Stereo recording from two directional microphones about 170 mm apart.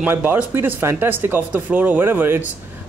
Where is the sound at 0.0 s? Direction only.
10° right (ahead or behind).